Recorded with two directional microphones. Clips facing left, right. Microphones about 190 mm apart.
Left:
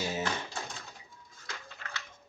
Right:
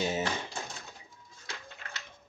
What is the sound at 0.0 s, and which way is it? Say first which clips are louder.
Typewriter: right 3 dB; 20° right (ahead or behind).